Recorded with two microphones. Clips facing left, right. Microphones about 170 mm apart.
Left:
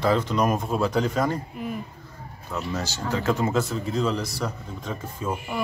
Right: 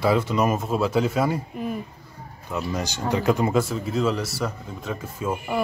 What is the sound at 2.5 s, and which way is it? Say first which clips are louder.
Speech: right 2 dB; 10° right (ahead or behind).